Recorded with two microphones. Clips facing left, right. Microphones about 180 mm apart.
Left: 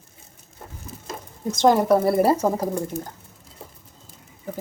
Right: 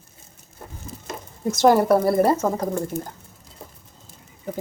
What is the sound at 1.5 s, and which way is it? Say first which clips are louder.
Speech: right 1 dB; 5° right (ahead or behind).